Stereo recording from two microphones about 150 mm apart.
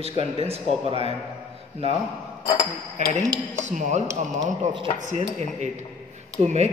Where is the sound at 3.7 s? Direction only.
50° right (ahead or behind).